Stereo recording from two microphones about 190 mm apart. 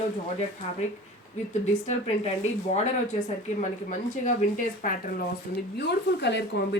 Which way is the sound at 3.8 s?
45° left (ahead or behind).